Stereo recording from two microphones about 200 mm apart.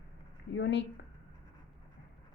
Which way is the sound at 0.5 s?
65° left (ahead or behind).